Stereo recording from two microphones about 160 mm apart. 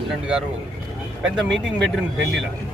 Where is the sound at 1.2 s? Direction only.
Centre (ahead or behind).